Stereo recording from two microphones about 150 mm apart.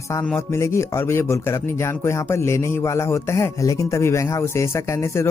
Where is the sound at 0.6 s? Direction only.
20° left (ahead or behind).